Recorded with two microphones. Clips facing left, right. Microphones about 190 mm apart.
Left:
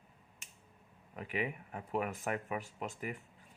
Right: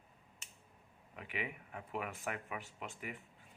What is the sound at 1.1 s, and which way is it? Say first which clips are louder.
Speech: left 6 dB; 40° left (ahead or behind).